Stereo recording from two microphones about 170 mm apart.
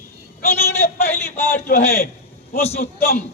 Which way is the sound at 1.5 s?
65° left (ahead or behind).